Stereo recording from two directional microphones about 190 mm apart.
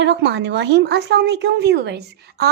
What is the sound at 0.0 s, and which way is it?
Speech, 65° right (ahead or behind).